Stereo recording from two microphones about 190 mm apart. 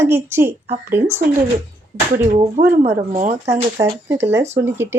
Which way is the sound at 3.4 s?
15° right (ahead or behind).